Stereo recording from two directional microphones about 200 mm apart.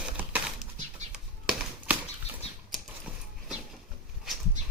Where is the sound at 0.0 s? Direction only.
5° right (ahead or behind).